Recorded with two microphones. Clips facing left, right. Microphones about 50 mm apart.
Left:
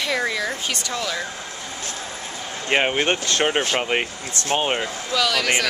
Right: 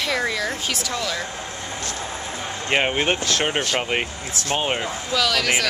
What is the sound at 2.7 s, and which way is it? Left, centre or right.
Speech, centre.